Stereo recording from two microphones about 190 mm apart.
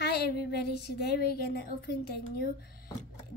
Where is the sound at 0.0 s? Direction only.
60° left (ahead or behind).